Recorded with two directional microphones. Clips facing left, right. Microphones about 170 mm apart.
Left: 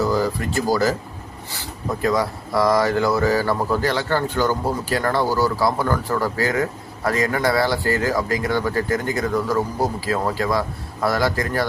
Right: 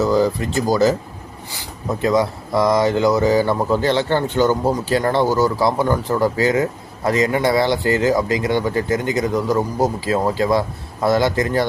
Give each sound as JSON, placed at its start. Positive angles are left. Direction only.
{"t": 0.0, "sound": "speech", "side_deg": -20}
{"t": 2.0, "sound": "speech", "side_deg": -20}